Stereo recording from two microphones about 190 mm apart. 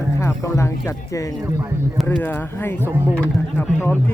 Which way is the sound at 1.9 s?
10° left (ahead or behind).